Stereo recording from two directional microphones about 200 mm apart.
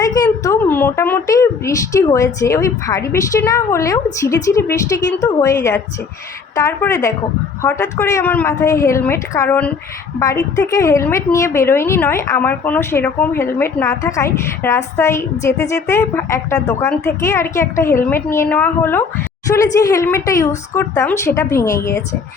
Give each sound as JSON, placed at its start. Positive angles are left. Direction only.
{"t": 0.0, "sound": "a woman's voice", "side_deg": 15}
{"t": 6.6, "sound": "a woman's voice", "side_deg": 15}